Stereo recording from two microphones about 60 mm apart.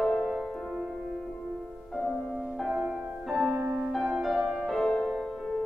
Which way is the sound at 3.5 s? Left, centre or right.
Right.